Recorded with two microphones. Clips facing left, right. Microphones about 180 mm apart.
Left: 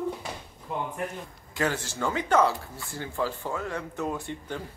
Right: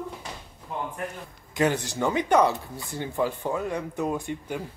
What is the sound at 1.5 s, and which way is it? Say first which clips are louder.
Speech: right 4 dB; 15° right (ahead or behind).